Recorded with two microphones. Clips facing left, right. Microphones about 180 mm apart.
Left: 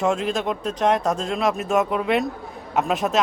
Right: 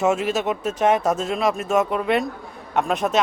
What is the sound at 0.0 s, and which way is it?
Speech, 5° right (ahead or behind).